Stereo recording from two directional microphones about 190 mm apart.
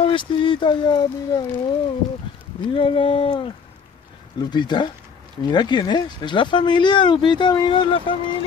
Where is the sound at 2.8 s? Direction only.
25° left (ahead or behind).